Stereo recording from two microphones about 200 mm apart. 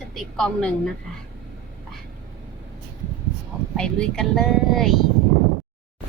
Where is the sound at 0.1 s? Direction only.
Centre (ahead or behind).